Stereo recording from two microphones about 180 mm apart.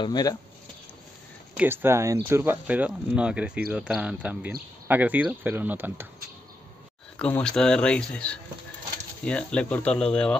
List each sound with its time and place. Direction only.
0.0 s speech: 20° left (ahead or behind)
1.6 s speech: 10° right (ahead or behind)
7.2 s speech: 5° left (ahead or behind)